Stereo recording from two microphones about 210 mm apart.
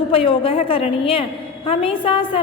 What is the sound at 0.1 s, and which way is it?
A woman's voice, 25° left (ahead or behind).